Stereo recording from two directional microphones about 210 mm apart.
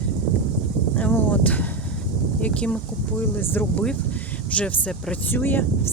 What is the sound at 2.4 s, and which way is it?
Speech, 5° left (ahead or behind).